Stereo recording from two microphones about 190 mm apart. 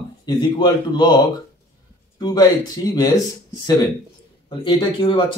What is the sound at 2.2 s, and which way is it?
Speech, 20° left (ahead or behind).